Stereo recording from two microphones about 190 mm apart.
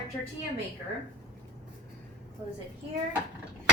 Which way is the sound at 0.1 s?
15° left (ahead or behind).